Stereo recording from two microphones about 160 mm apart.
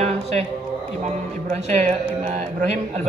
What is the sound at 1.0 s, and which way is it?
A woman's voice, 40° right (ahead or behind).